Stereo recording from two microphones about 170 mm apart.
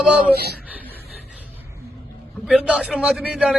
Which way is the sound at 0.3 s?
70° right (ahead or behind).